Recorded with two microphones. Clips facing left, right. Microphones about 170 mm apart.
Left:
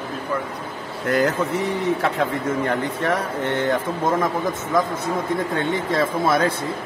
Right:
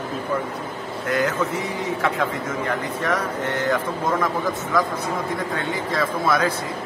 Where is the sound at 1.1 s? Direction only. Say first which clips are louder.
Left 3 dB; 35° left (ahead or behind).